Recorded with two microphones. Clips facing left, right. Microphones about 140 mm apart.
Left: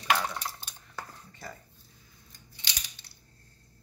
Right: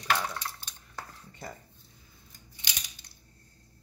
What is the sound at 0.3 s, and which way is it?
Stir, 20° left (ahead or behind).